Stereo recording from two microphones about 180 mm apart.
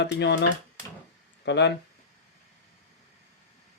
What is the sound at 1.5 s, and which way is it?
Speech, 75° left (ahead or behind).